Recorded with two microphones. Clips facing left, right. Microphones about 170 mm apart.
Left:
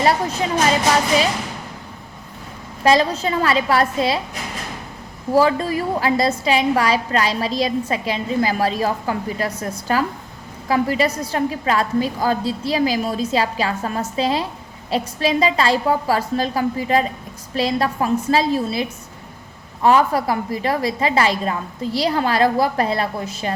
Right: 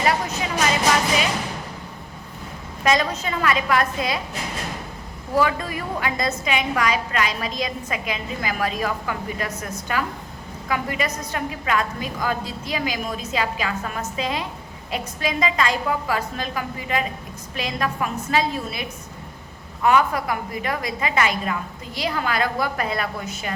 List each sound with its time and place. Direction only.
2.8 s a woman's voice: 30° left (ahead or behind)
5.3 s a woman's voice: 30° left (ahead or behind)